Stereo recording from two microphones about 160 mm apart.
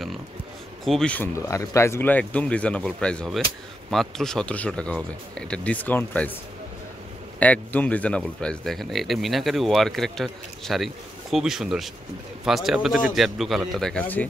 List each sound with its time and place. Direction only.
0.8 s speech: 5° left (ahead or behind)
7.3 s speech: 10° left (ahead or behind)